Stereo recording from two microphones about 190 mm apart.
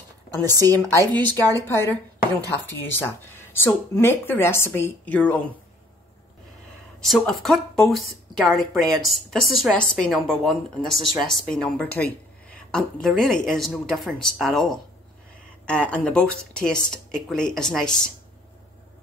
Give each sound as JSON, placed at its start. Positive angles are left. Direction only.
{"t": 0.4, "sound": "a woman's voice", "side_deg": -20}
{"t": 1.3, "sound": "speech", "side_deg": 15}
{"t": 7.0, "sound": "speech", "side_deg": 0}